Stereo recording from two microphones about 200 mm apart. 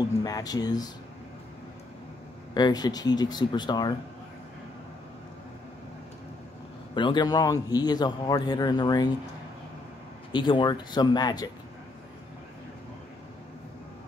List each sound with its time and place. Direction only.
0.0 s a man's voice: 20° left (ahead or behind)
2.5 s a man's voice: 20° left (ahead or behind)
7.0 s a man's voice: 20° left (ahead or behind)
10.3 s a man's voice: 25° left (ahead or behind)